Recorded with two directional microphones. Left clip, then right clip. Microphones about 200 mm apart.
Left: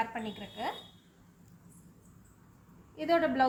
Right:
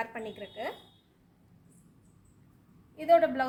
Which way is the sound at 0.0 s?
50° right (ahead or behind).